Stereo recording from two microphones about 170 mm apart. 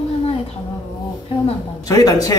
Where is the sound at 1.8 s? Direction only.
20° left (ahead or behind).